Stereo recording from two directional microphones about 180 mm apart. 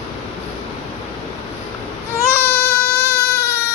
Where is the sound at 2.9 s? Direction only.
70° left (ahead or behind).